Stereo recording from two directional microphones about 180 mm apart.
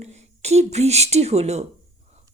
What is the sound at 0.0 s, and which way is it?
Speech, 40° right (ahead or behind).